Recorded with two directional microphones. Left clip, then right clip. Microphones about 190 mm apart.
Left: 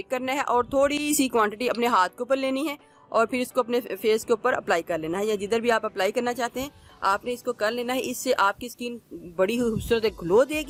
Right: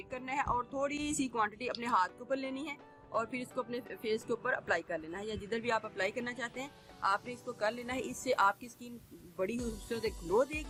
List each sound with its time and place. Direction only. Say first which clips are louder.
0.1 s speech: left 10 dB; 50° left (ahead or behind)